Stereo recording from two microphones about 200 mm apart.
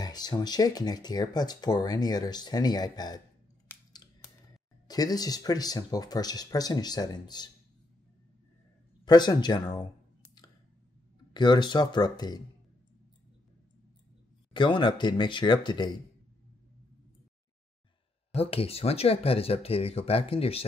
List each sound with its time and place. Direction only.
0.0 s speech: 20° left (ahead or behind)
4.8 s speech: 20° left (ahead or behind)
9.0 s a sound: 20° left (ahead or behind)
11.3 s speech: 20° left (ahead or behind)
14.5 s speech: 25° left (ahead or behind)
18.3 s speech: 30° left (ahead or behind)